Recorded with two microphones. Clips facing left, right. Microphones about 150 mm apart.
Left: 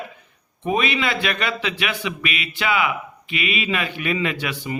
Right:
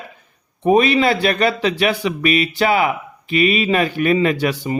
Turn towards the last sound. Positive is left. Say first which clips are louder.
# right 8 dB
turn(degrees=-40)  # may be behind; listen again after turning